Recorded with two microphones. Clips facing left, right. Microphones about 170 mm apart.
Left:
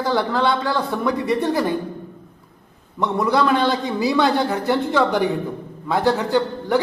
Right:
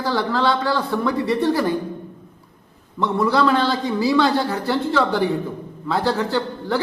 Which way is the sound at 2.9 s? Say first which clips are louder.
Even; 15° left (ahead or behind).